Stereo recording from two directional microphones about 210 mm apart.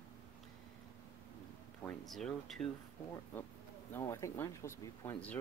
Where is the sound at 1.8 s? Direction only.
Centre (ahead or behind).